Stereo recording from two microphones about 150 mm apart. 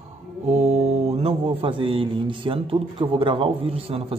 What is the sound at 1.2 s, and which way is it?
A man's voice, 35° right (ahead or behind).